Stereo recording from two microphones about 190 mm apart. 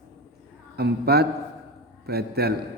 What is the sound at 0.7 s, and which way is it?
A man's voice, 55° right (ahead or behind).